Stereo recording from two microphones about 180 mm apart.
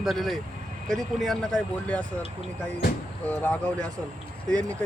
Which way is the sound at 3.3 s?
10° left (ahead or behind).